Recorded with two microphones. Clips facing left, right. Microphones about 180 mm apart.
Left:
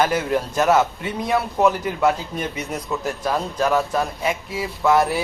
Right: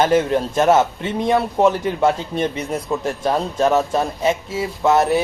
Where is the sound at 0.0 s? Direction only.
25° right (ahead or behind).